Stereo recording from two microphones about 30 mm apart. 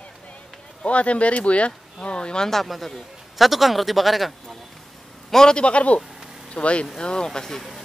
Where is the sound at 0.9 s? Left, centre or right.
Left.